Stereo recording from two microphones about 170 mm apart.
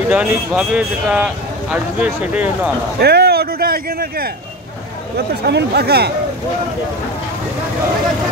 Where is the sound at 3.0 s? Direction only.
70° right (ahead or behind).